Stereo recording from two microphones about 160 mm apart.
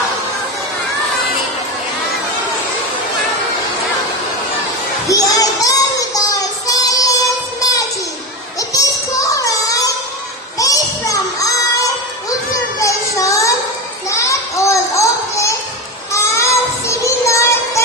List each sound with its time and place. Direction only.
5.0 s child singing: 20° left (ahead or behind)
9.3 s music: 20° left (ahead or behind)
10.6 s children playing: 20° left (ahead or behind)
16.1 s music: 15° left (ahead or behind)